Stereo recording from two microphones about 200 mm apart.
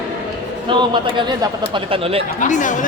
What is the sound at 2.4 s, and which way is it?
Speech, 40° left (ahead or behind).